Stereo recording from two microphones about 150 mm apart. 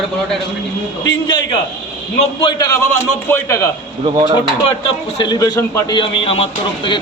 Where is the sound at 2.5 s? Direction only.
35° left (ahead or behind).